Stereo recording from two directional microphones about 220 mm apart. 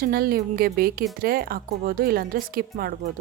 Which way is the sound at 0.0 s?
40° right (ahead or behind).